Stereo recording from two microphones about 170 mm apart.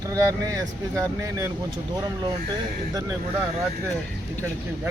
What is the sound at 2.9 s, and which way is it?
Speech, 20° right (ahead or behind).